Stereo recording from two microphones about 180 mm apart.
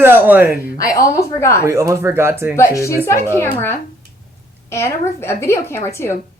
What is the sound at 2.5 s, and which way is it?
A woman's voice, 15° left (ahead or behind).